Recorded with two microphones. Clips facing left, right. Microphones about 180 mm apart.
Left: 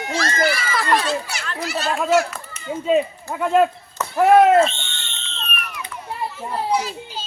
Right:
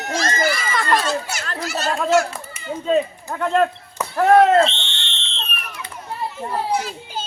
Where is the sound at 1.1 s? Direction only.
45° right (ahead or behind).